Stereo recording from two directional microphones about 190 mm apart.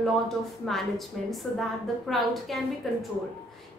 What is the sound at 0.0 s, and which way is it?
A woman's voice, centre (ahead or behind).